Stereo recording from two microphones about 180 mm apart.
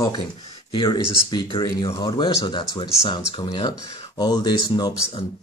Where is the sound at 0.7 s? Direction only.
25° left (ahead or behind).